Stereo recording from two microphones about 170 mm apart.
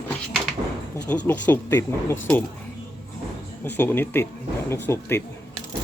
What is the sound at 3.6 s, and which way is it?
Speech, 10° left (ahead or behind).